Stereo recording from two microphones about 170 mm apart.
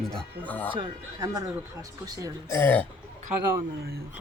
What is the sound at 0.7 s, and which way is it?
Speech, 25° right (ahead or behind).